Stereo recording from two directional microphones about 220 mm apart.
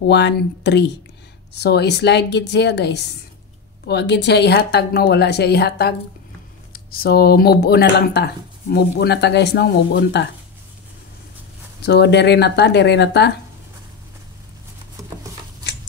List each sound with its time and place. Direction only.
0.1 s speech: 50° left (ahead or behind)
11.8 s speech: 50° left (ahead or behind)
15.7 s chewing: 50° left (ahead or behind)